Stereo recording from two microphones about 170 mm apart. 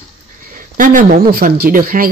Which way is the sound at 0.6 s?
50° right (ahead or behind).